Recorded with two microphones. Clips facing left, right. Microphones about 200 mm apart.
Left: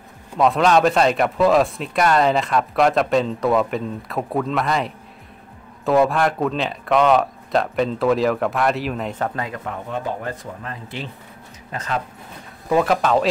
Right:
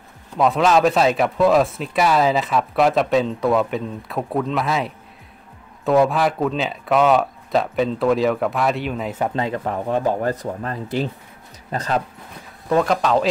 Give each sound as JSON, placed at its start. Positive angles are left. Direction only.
{"t": 0.4, "sound": "speech", "side_deg": 0}
{"t": 9.3, "sound": "speech", "side_deg": -25}
{"t": 9.8, "sound": "speech", "side_deg": -40}
{"t": 12.6, "sound": "speech", "side_deg": 5}